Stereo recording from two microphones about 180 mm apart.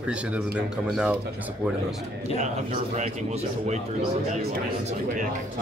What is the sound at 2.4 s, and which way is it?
Speech, 40° right (ahead or behind).